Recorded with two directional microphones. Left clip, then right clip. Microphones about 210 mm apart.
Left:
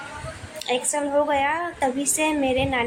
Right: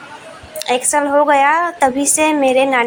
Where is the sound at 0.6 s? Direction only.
15° right (ahead or behind).